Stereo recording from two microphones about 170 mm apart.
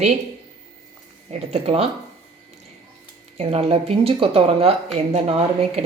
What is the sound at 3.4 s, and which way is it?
A woman's voice, 35° right (ahead or behind).